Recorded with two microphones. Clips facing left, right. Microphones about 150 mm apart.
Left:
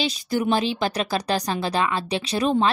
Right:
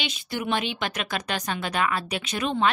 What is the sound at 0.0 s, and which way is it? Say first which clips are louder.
Speech: left 7 dB; 35° left (ahead or behind).